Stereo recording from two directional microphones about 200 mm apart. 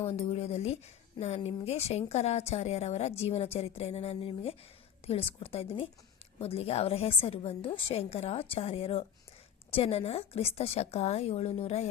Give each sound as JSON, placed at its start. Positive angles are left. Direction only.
{"t": 0.1, "sound": "a woman's voice", "side_deg": 30}